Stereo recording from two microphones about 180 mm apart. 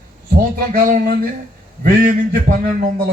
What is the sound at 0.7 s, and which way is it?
A man's voice, 50° right (ahead or behind).